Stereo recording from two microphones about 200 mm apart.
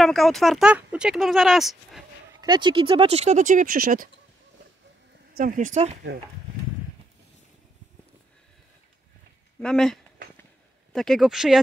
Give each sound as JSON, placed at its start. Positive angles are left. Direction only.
{"t": 0.0, "sound": "speech", "side_deg": 0}
{"t": 2.4, "sound": "speech", "side_deg": -20}
{"t": 5.4, "sound": "speech", "side_deg": -40}
{"t": 9.6, "sound": "a sound", "side_deg": 5}
{"t": 10.9, "sound": "speech", "side_deg": 0}